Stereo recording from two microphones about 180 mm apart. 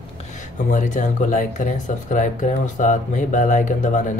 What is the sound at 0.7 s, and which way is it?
Speech, 45° left (ahead or behind).